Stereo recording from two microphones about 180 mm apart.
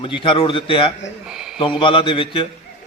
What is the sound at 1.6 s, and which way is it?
Speech, 30° left (ahead or behind).